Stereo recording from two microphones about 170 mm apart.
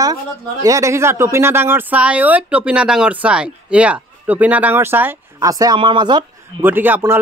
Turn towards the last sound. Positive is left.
turn(degrees=-10)  # may be behind; listen again after turning